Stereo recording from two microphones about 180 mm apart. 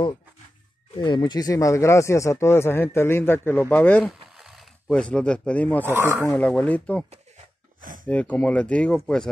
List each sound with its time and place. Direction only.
0.9 s speech: 25° left (ahead or behind); by 4.1 s 10° left (ahead or behind)
4.1 s speech: centre (ahead or behind)
5.9 s speech: 15° right (ahead or behind)
6.2 s speech: 10° left (ahead or behind)
7.8 s a sound: 50° right (ahead or behind)
8.1 s speech: 5° left (ahead or behind)